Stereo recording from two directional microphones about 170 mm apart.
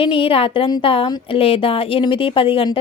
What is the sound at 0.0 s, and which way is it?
A woman's voice, 35° left (ahead or behind).